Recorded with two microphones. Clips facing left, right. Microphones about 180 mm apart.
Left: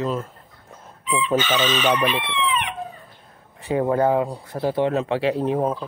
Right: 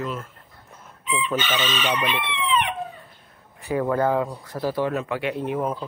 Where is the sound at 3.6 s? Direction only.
25° left (ahead or behind).